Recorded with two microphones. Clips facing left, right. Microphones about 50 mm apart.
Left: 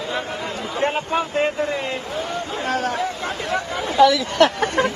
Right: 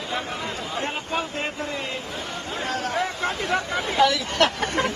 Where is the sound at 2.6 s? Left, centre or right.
Left.